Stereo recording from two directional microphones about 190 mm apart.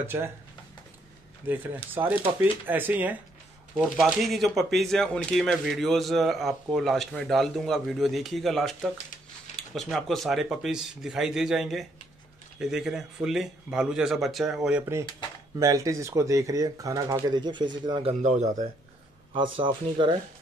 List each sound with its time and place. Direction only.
0.0 s speech: 10° right (ahead or behind)
1.5 s speech: 10° right (ahead or behind)
9.8 s speech: centre (ahead or behind)
15.6 s speech: 15° right (ahead or behind)
18.2 s speech: 40° right (ahead or behind)
19.3 s speech: 25° right (ahead or behind)